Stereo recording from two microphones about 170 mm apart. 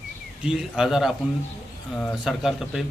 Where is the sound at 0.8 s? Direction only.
Centre (ahead or behind).